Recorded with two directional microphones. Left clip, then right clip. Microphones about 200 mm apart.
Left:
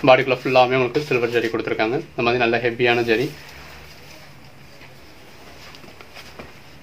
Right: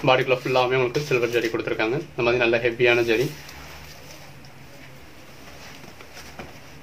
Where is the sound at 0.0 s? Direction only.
45° left (ahead or behind).